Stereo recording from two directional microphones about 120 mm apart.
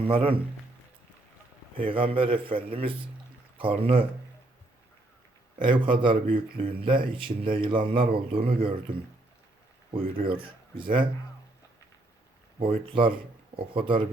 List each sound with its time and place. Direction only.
0.0 s speech: 50° right (ahead or behind)
1.7 s speech: 50° right (ahead or behind)
5.6 s speech: 45° right (ahead or behind)
9.9 s speech: 45° right (ahead or behind)
12.8 s speech: 45° right (ahead or behind)